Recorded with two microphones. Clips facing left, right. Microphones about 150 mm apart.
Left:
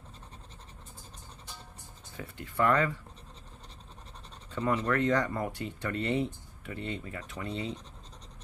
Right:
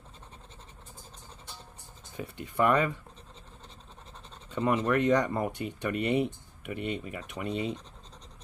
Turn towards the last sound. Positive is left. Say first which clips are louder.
# right 4 dB
turn(degrees=-15)  # may be behind; listen again after turning